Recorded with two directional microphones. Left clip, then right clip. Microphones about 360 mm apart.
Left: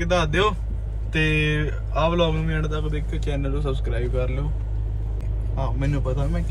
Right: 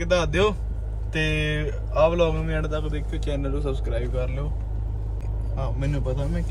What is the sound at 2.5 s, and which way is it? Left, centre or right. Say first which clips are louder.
Speech: even; centre.